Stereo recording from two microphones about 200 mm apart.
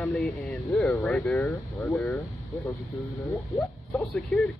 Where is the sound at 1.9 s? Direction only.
5° left (ahead or behind).